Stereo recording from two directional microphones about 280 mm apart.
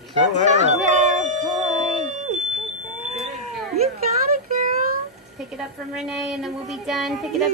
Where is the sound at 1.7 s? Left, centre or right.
Centre.